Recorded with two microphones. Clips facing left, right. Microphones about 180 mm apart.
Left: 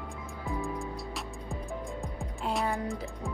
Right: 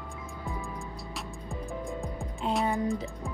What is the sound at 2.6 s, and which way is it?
Music, 20° right (ahead or behind).